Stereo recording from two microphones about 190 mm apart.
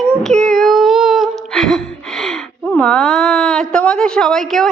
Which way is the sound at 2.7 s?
5° left (ahead or behind).